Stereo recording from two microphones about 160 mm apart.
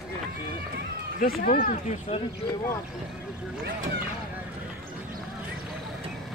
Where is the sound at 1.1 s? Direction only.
65° left (ahead or behind).